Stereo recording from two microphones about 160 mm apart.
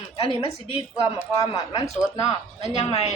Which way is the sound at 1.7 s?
35° left (ahead or behind).